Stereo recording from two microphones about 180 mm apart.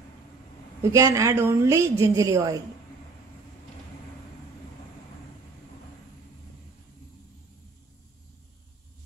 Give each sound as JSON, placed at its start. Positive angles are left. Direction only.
{"t": 0.9, "sound": "a woman's voice", "side_deg": -15}